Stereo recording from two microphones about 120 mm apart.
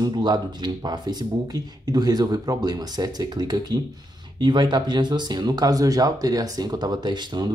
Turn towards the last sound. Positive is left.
turn(degrees=-40)  # may be behind; listen again after turning